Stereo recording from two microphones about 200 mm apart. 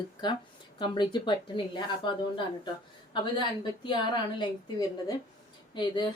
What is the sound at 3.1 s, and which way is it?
Speech, 25° left (ahead or behind).